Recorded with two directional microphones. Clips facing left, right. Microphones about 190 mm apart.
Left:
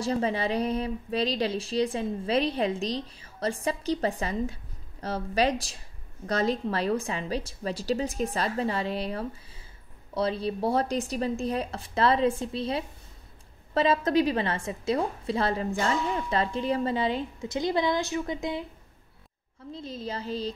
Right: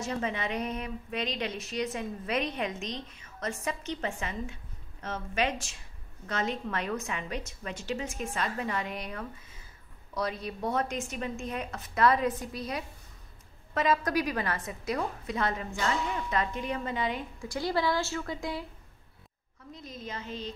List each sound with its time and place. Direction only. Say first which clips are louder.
0.0 s a woman's voice: left 6 dB; 35° left (ahead or behind)
19.7 s a woman's voice: left 6 dB; 30° left (ahead or behind)